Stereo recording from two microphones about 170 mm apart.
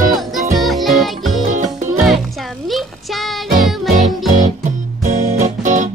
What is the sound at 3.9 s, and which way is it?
Music, 50° right (ahead or behind).